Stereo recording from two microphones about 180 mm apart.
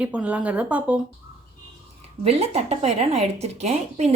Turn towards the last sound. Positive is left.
turn(degrees=-35)  # may be behind; listen again after turning